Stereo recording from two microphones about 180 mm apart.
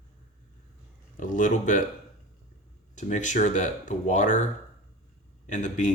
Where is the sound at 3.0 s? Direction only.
45° left (ahead or behind).